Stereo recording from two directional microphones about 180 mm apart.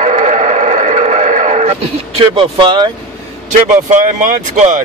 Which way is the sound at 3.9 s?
45° right (ahead or behind).